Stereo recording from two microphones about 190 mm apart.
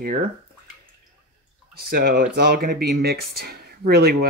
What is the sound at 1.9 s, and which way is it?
Speech, 50° right (ahead or behind).